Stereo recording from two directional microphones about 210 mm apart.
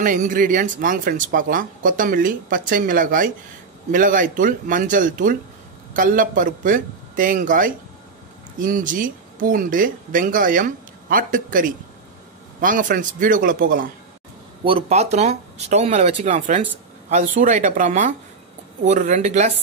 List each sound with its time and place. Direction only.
0.0 s speech: 40° right (ahead or behind)
14.6 s speech: 25° right (ahead or behind)